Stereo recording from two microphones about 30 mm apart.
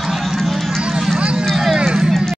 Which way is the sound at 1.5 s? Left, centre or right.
Centre.